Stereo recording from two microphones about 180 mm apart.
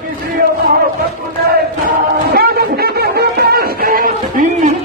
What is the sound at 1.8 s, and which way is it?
Music, 60° right (ahead or behind).